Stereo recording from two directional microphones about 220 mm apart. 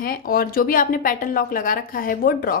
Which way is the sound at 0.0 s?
40° left (ahead or behind).